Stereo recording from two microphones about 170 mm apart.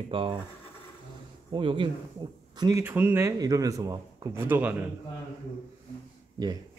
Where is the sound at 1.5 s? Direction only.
30° right (ahead or behind).